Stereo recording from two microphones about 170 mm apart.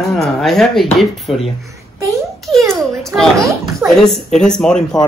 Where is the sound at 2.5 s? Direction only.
Centre (ahead or behind).